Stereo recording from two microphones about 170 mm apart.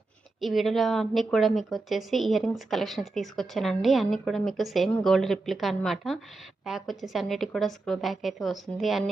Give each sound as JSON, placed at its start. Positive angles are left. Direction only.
{"t": 0.3, "sound": "speech", "side_deg": 0}